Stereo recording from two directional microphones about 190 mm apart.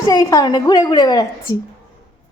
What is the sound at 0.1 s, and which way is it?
A woman's voice, 20° left (ahead or behind).